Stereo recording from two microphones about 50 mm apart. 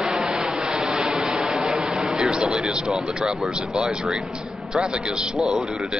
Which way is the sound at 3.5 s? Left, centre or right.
Centre.